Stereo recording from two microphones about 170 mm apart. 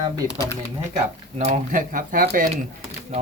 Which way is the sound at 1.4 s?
45° right (ahead or behind).